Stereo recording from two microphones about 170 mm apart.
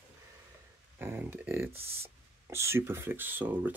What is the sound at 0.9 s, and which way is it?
Speech, 10° right (ahead or behind).